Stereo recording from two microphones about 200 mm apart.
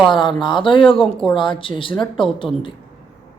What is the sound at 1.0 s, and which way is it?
Speech, centre (ahead or behind).